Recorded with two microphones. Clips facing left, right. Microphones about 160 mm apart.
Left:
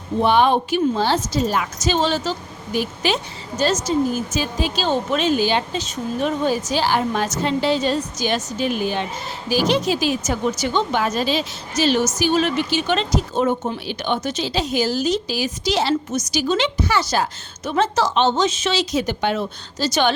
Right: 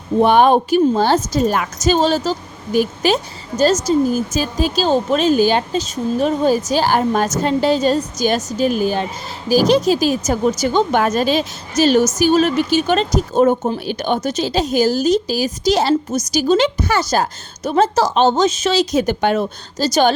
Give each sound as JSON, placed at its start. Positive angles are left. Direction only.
{"t": 0.2, "sound": "a woman's voice", "side_deg": -50}